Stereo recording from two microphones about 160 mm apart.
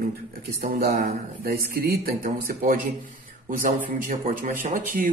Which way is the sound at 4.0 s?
60° right (ahead or behind).